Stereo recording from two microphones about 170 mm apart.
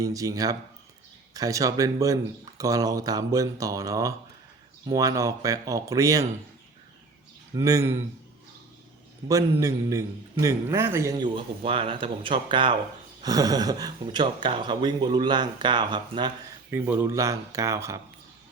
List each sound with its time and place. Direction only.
0.0 s speech: 20° right (ahead or behind)
7.5 s speech: 20° right (ahead or behind)
9.3 s speech: 20° right (ahead or behind)
11.2 s speech: 35° right (ahead or behind)
16.6 s speech: 15° right (ahead or behind)